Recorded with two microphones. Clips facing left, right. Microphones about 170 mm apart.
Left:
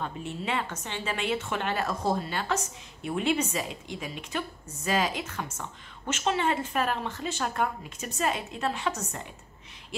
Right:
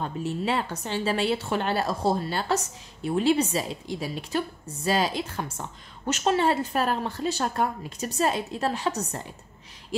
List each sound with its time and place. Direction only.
0.0 s a woman's voice: 35° right (ahead or behind)